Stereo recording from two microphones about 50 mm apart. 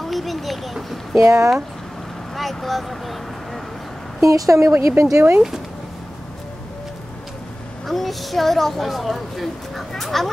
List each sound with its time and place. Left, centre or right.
0.0 s vehicle: centre
1.1 s speech: right
2.3 s vehicle: centre
4.2 s speech: right
7.8 s a woman's voice: centre